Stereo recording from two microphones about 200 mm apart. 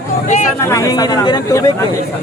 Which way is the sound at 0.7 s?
15° left (ahead or behind).